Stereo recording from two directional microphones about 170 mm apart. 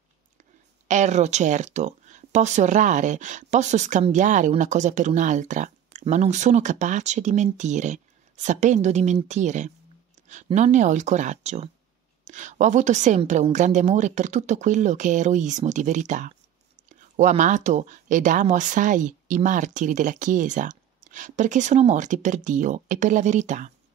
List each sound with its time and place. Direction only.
0.8 s speech: 45° right (ahead or behind)